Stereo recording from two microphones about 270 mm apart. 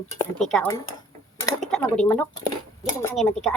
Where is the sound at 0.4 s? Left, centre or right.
Centre.